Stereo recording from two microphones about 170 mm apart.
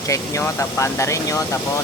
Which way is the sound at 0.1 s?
15° left (ahead or behind).